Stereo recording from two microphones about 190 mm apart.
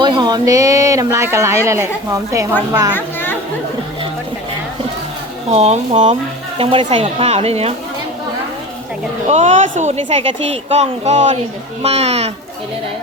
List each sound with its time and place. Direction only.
0.0 s speech: 25° right (ahead or behind)
2.9 s children playing: 10° left (ahead or behind)
5.5 s speech: 35° right (ahead or behind)
9.3 s speech: 40° right (ahead or behind)